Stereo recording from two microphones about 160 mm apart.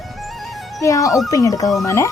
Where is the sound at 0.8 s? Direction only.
20° left (ahead or behind).